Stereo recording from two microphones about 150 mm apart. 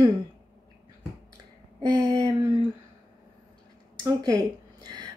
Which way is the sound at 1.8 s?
30° right (ahead or behind).